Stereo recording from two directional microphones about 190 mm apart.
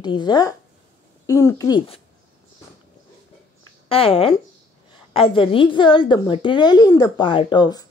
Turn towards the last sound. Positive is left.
turn(degrees=20)  # may be behind; listen again after turning